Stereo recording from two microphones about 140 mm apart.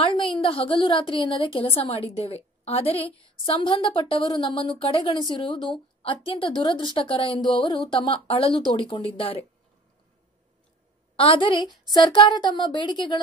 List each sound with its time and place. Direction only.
0.1 s a woman's voice: 35° left (ahead or behind)
11.1 s speech: 40° left (ahead or behind)